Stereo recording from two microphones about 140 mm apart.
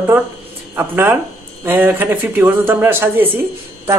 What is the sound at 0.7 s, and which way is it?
Speech, 15° right (ahead or behind).